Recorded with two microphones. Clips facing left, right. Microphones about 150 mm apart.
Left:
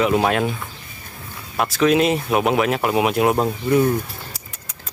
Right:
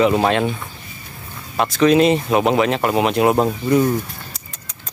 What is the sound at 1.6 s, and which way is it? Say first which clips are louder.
Speech: right 3 dB; centre (ahead or behind).